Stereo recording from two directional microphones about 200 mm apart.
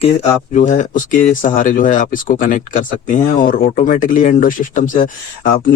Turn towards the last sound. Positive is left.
turn(degrees=40)  # may be behind; listen again after turning